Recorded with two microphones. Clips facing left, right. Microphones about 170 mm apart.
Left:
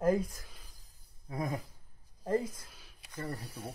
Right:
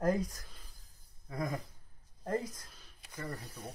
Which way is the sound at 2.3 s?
5° left (ahead or behind).